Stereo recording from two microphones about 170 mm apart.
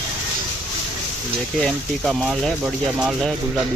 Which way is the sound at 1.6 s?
Centre (ahead or behind).